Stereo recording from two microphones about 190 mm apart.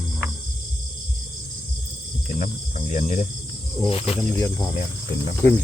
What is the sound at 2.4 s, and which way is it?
Cricket, 40° left (ahead or behind).